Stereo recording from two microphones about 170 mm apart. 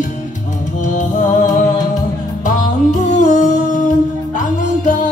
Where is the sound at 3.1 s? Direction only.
45° left (ahead or behind).